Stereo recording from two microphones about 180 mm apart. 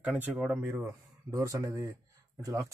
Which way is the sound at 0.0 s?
5° right (ahead or behind).